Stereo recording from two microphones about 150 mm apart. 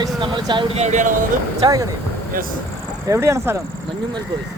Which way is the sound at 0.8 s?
55° right (ahead or behind).